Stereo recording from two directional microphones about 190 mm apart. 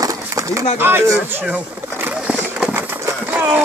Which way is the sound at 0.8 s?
10° right (ahead or behind).